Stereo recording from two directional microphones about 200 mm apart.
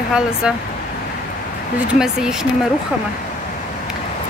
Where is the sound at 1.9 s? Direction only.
5° right (ahead or behind).